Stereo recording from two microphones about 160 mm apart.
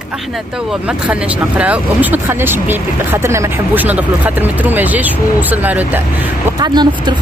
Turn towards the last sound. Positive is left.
turn(degrees=-25)  # may be behind; listen again after turning